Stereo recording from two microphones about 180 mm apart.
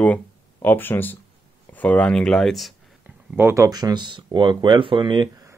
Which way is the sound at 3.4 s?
15° right (ahead or behind).